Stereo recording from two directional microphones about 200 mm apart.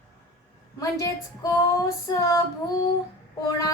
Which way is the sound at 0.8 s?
15° left (ahead or behind).